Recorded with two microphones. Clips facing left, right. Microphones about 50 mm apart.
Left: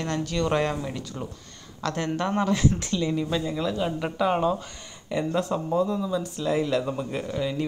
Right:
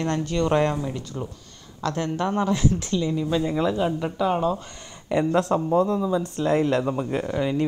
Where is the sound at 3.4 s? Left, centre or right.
Right.